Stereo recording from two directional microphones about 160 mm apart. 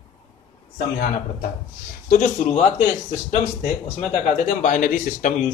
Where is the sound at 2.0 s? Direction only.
55° left (ahead or behind).